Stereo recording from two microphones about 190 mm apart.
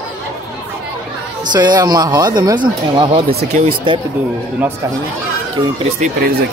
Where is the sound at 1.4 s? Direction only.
20° right (ahead or behind).